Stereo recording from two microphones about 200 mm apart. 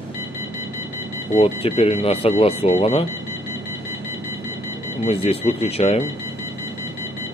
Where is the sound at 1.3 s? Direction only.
30° left (ahead or behind).